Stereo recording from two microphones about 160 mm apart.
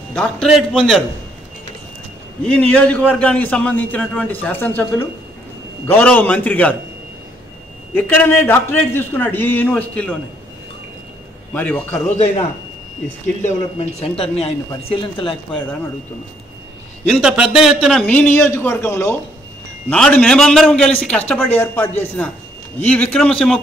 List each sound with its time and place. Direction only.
0.1 s a man's voice: 5° left (ahead or behind)
2.4 s a man's voice: 10° left (ahead or behind)
7.9 s a man's voice: 15° left (ahead or behind)
11.5 s a man's voice: 10° left (ahead or behind)
13.4 s speech: 45° left (ahead or behind)
17.1 s a man's voice: 5° right (ahead or behind)